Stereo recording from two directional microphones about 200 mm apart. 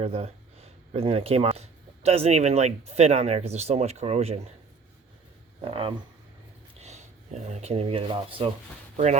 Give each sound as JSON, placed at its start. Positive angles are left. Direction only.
{"t": 0.0, "sound": "speech", "side_deg": -30}
{"t": 5.6, "sound": "speech", "side_deg": -25}